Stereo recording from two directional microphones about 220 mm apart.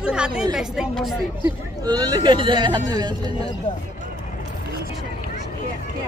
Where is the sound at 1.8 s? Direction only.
20° right (ahead or behind).